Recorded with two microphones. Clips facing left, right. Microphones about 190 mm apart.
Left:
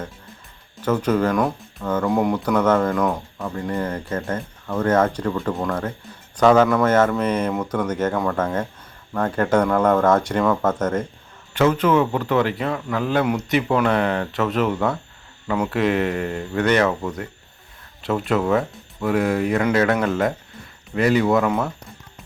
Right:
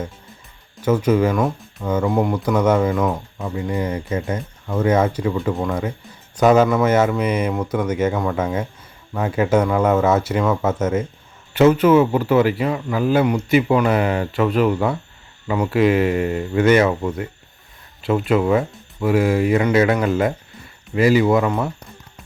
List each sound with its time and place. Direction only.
0.8 s speech: 10° right (ahead or behind)
16.8 s speech: 20° right (ahead or behind)
18.0 s speech: centre (ahead or behind)